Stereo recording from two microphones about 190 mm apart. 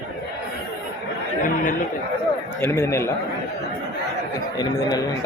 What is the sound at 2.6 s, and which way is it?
Speech, 15° left (ahead or behind).